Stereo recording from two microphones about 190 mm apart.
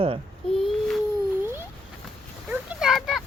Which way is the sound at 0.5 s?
Centre (ahead or behind).